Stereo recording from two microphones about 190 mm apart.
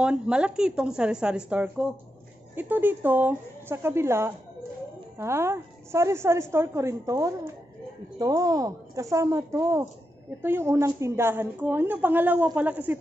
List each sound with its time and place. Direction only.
0.0 s a woman's voice: 5° right (ahead or behind)